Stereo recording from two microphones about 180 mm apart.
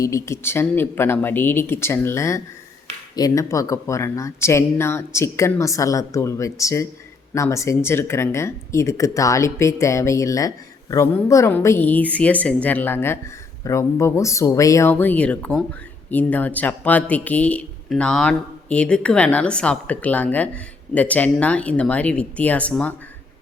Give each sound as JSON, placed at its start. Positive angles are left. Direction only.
{"t": 0.0, "sound": "speech", "side_deg": 15}